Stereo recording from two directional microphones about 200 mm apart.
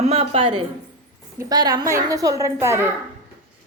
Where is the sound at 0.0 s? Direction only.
30° right (ahead or behind).